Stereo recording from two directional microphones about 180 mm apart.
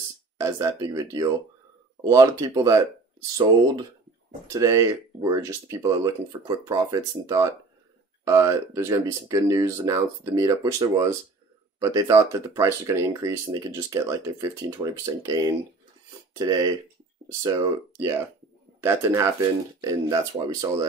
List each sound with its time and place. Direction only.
0.4 s speech: 15° right (ahead or behind)